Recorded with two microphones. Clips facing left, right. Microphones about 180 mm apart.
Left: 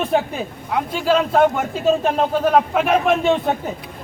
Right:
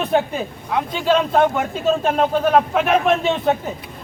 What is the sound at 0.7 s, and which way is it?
Speech, 5° left (ahead or behind).